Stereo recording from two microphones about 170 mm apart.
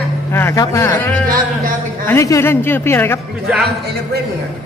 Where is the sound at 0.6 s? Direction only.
20° left (ahead or behind).